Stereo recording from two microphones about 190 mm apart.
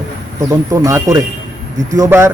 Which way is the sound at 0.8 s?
15° right (ahead or behind).